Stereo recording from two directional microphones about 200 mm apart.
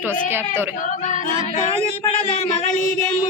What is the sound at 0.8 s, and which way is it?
Singing, 40° left (ahead or behind).